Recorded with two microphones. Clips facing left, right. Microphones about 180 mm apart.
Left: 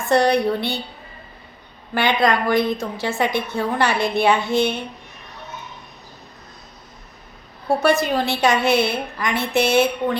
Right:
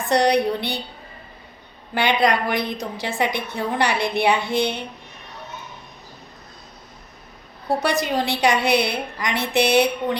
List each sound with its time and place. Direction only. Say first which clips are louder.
0.0 s a woman's voice: left 1 dB; 20° right (ahead or behind)
2.0 s a woman's voice: left 1 dB; 20° right (ahead or behind)
4.4 s speech: left 3 dB; 20° left (ahead or behind)
7.8 s a woman's voice: left 4 dB; 15° right (ahead or behind)